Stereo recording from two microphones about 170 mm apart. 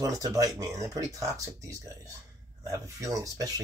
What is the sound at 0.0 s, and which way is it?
Speech, 20° right (ahead or behind).